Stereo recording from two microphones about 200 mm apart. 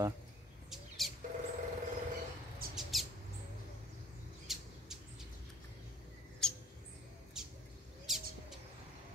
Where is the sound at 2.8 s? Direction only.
Centre (ahead or behind).